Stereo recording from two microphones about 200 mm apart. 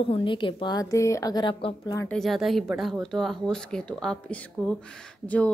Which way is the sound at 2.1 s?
Centre (ahead or behind).